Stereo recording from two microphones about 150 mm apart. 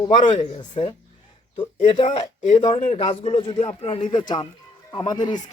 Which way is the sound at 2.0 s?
50° left (ahead or behind).